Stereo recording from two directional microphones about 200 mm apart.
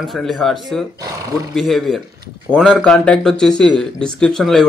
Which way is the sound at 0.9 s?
15° right (ahead or behind).